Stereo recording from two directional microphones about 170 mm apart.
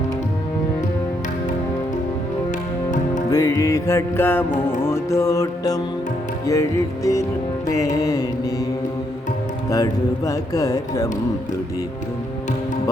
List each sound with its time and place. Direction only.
3.2 s music: 20° left (ahead or behind)
7.7 s speech: 20° left (ahead or behind)
9.6 s speech: 20° left (ahead or behind)